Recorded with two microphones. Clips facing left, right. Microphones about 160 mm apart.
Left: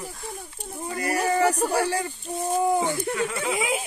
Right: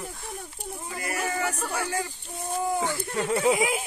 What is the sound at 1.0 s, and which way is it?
Speech, 35° left (ahead or behind).